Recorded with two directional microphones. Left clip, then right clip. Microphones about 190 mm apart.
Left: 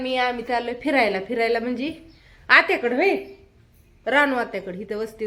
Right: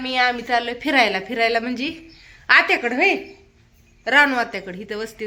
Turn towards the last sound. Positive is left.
turn(degrees=0)  # may be behind; listen again after turning